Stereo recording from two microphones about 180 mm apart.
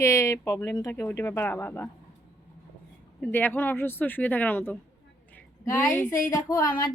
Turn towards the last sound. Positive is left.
turn(degrees=25)  # may be behind; listen again after turning